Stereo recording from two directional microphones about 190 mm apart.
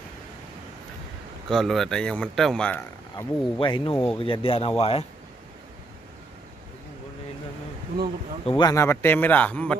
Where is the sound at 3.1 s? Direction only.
25° left (ahead or behind).